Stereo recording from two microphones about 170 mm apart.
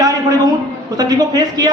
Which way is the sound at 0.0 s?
20° right (ahead or behind).